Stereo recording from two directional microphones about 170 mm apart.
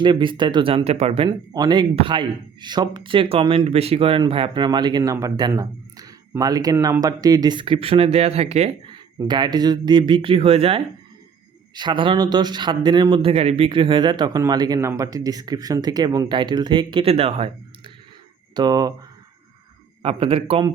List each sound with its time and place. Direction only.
0.0 s speech: 30° right (ahead or behind)
1.3 s speech: 25° right (ahead or behind); by 8.7 s 40° right (ahead or behind)
9.1 s speech: 25° right (ahead or behind)
18.5 s speech: 25° right (ahead or behind)
20.0 s speech: 35° right (ahead or behind)